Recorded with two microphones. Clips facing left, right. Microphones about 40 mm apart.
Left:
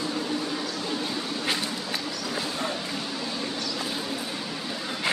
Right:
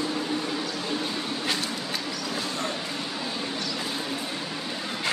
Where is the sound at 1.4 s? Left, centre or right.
Centre.